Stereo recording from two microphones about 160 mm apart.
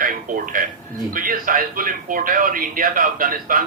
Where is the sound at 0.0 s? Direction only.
60° right (ahead or behind).